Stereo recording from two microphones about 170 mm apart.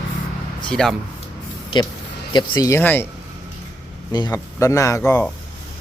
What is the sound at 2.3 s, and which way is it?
Speech, 25° left (ahead or behind).